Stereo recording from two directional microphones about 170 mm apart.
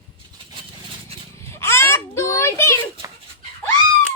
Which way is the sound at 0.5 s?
30° right (ahead or behind).